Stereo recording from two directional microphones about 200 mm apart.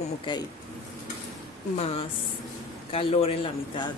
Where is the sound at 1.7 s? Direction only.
30° left (ahead or behind).